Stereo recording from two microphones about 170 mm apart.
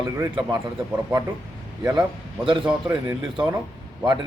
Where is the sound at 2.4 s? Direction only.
30° right (ahead or behind).